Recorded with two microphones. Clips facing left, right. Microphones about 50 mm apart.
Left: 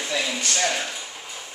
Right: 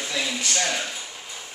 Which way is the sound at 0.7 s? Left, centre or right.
Centre.